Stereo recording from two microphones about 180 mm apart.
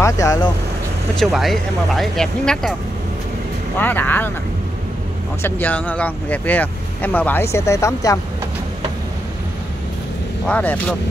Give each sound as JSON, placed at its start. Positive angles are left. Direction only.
{"t": 0.0, "sound": "vehicle", "side_deg": 20}
{"t": 1.2, "sound": "speech", "side_deg": 0}
{"t": 3.7, "sound": "speech", "side_deg": 10}
{"t": 5.4, "sound": "speech", "side_deg": 10}
{"t": 10.4, "sound": "speech", "side_deg": 10}